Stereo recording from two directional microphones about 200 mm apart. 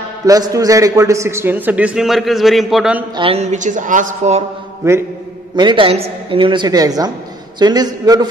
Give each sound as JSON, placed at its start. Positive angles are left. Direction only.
{"t": 0.3, "sound": "a man's voice", "side_deg": -15}
{"t": 3.2, "sound": "speech", "side_deg": -30}
{"t": 4.8, "sound": "a man's voice", "side_deg": -15}